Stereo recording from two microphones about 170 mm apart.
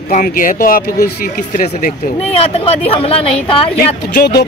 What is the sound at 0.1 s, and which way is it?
Speech, 50° left (ahead or behind).